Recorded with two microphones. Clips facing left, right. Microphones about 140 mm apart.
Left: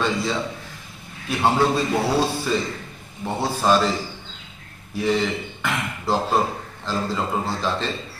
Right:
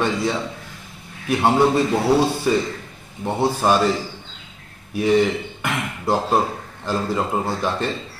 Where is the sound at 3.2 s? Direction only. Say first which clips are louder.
Right 4 dB; 15° right (ahead or behind).